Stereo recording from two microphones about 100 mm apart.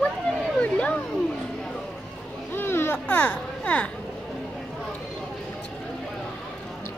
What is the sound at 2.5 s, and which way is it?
A child's voice, 25° left (ahead or behind).